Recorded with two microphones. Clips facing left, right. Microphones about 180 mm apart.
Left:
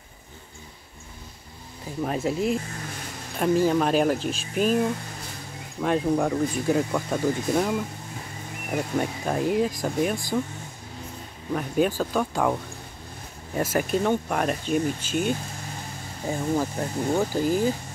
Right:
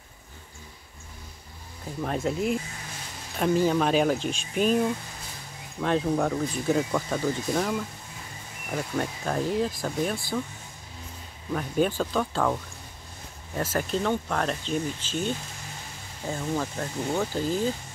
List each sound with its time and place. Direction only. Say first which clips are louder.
2.0 s speech: left 2 dB; 5° left (ahead or behind)
5.8 s speech: left 2 dB; 5° left (ahead or behind)
8.7 s speech: left 3 dB; 15° left (ahead or behind)
11.5 s speech: left 2 dB; 5° left (ahead or behind)
13.6 s speech: left 4 dB; 10° left (ahead or behind)